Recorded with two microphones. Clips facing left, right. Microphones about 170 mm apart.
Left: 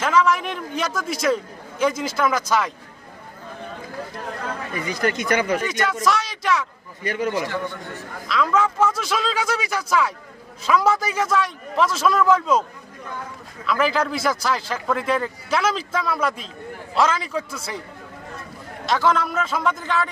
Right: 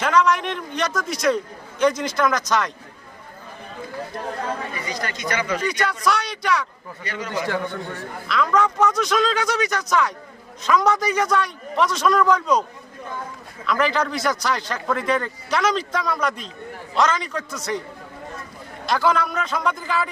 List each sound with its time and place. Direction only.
0.0 s a man's voice: 5° left (ahead or behind)
4.8 s speech: 55° left (ahead or behind)
5.7 s a man's voice: centre (ahead or behind)
7.0 s speech: 50° left (ahead or behind)
8.3 s a man's voice: 5° left (ahead or behind)
13.7 s a man's voice: 5° left (ahead or behind)
18.9 s a man's voice: centre (ahead or behind)